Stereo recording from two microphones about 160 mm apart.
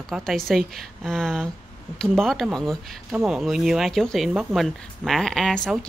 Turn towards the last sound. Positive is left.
turn(degrees=5)  # may be behind; listen again after turning